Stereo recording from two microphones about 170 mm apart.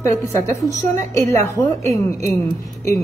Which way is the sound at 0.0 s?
15° left (ahead or behind).